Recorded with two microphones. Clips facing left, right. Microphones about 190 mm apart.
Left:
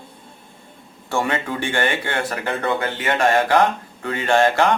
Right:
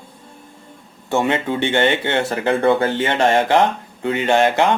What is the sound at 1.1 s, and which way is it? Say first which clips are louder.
Speech: right 4 dB; 20° right (ahead or behind).